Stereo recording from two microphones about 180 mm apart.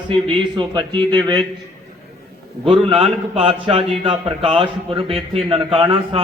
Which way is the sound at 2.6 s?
30° right (ahead or behind).